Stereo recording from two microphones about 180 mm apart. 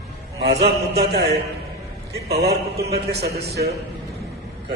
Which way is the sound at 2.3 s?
60° right (ahead or behind).